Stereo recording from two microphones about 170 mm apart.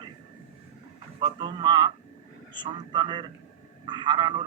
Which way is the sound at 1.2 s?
25° right (ahead or behind).